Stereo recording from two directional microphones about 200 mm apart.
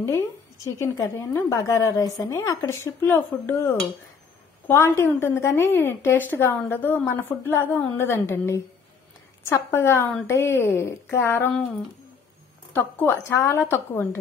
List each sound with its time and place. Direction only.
0.7 s a woman's voice: 15° left (ahead or behind)
12.7 s a woman's voice: 10° left (ahead or behind)